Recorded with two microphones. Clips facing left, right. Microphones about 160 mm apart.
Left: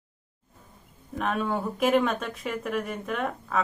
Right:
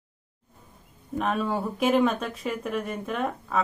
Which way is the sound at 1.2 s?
Centre (ahead or behind).